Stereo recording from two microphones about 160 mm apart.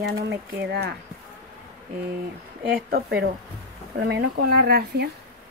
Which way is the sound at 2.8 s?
75° right (ahead or behind).